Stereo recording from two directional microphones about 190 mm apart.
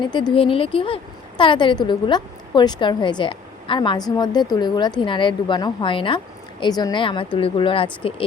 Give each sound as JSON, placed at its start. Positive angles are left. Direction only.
{"t": 0.0, "sound": "a woman's voice", "side_deg": 25}